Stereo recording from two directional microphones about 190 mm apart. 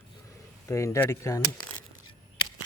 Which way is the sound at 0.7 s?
15° left (ahead or behind).